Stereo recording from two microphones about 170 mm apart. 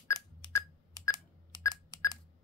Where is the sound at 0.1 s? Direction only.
20° left (ahead or behind).